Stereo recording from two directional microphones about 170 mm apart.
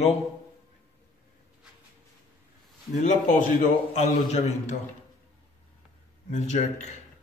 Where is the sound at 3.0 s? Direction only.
45° left (ahead or behind).